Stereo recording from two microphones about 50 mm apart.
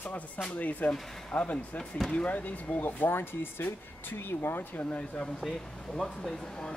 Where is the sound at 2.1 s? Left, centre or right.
Left.